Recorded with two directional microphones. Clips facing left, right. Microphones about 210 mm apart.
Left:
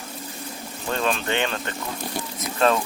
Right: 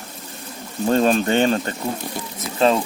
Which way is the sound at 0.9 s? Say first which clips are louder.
Right 8 dB; 40° right (ahead or behind).